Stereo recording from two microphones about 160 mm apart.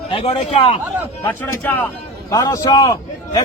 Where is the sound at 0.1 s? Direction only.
40° left (ahead or behind).